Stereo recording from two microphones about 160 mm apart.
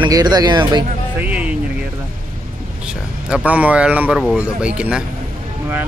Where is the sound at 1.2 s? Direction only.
10° right (ahead or behind).